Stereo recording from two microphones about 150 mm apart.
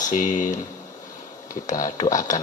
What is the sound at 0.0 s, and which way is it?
Speech, 60° left (ahead or behind).